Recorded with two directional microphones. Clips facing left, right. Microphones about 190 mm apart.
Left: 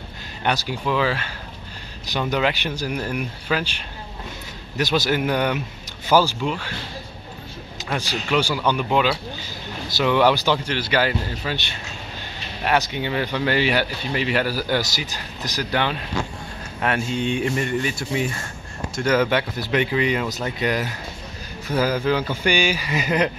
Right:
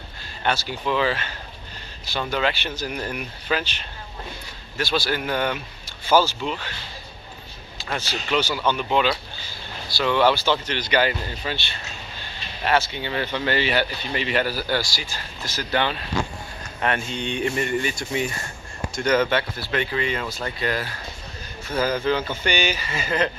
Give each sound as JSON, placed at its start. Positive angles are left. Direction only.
{"t": 0.4, "sound": "speech", "side_deg": 10}
{"t": 4.7, "sound": "a man's voice", "side_deg": 20}
{"t": 8.0, "sound": "speech", "side_deg": 10}